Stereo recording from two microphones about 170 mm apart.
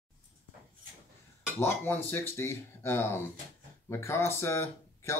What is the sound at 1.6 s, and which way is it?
Speech, 15° left (ahead or behind).